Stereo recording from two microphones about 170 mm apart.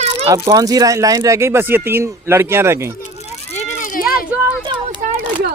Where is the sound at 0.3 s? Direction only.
20° right (ahead or behind).